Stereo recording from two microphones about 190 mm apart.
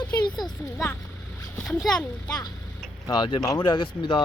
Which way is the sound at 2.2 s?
20° left (ahead or behind).